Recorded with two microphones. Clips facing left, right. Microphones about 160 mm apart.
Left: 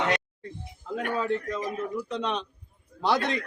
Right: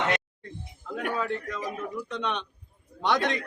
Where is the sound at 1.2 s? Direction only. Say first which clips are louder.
Left 3 dB; 30° left (ahead or behind).